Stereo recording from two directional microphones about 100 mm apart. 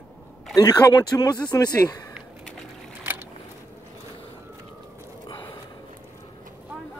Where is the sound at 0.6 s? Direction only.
40° left (ahead or behind).